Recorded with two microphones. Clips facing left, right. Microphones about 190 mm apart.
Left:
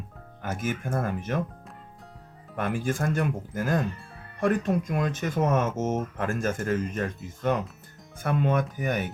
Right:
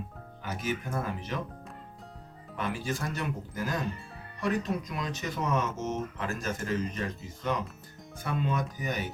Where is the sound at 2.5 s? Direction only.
55° left (ahead or behind).